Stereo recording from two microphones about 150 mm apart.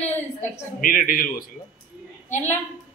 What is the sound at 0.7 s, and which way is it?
Speech, 70° left (ahead or behind).